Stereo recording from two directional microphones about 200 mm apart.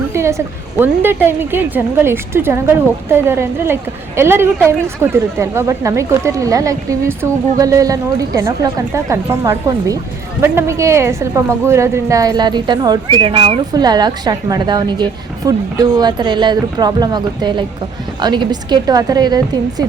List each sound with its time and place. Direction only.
0.1 s a woman's voice: 15° right (ahead or behind)